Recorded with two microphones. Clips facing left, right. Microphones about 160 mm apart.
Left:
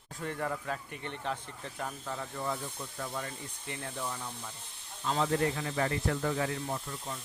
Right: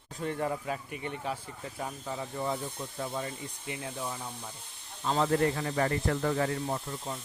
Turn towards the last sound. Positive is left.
turn(degrees=-30)  # may be behind; listen again after turning